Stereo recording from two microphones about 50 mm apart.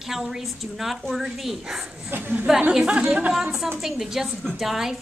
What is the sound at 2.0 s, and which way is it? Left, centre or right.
Speech, right.